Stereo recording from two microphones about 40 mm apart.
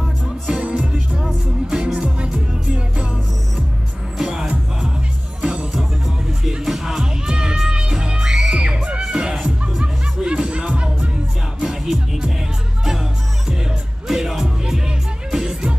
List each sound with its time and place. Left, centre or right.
0.6 s music: right
4.2 s music: centre
6.6 s music: centre; by 10.9 s right
11.6 s music: centre
14.0 s music: centre